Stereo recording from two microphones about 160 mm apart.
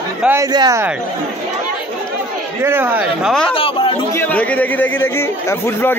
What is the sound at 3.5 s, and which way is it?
Chatter, 35° left (ahead or behind).